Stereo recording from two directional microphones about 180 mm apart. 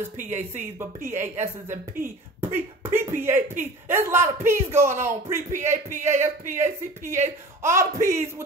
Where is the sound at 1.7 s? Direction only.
50° right (ahead or behind).